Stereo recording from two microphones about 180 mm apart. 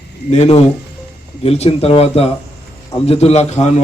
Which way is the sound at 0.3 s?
35° left (ahead or behind).